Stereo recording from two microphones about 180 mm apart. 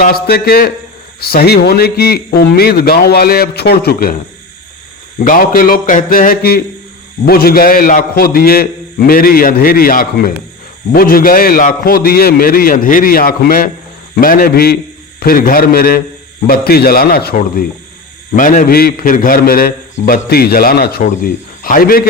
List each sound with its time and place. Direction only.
0.0 s a man's voice: 60° left (ahead or behind)
5.2 s a man's voice: 50° left (ahead or behind)